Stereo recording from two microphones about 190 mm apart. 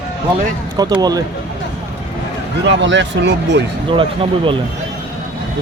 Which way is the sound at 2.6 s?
75° right (ahead or behind).